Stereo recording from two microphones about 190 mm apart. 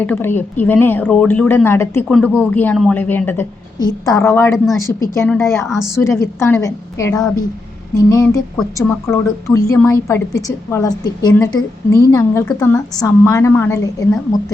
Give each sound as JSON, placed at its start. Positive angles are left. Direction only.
{"t": 0.0, "sound": "a woman's voice", "side_deg": 10}
{"t": 4.5, "sound": "a woman's voice", "side_deg": 0}
{"t": 4.8, "sound": "a woman's voice", "side_deg": 15}
{"t": 5.6, "sound": "a woman's voice", "side_deg": 0}
{"t": 6.0, "sound": "a woman's voice", "side_deg": 15}
{"t": 8.5, "sound": "a woman's voice", "side_deg": 5}
{"t": 9.5, "sound": "a woman's voice", "side_deg": 15}